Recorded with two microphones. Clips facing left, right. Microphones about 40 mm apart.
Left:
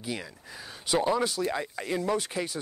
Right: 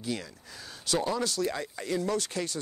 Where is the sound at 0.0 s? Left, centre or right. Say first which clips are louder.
Right 1 dB; centre.